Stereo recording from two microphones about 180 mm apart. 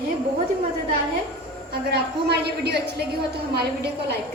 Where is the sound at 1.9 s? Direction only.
65° right (ahead or behind).